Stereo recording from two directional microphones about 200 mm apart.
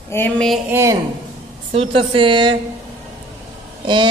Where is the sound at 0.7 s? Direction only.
15° right (ahead or behind).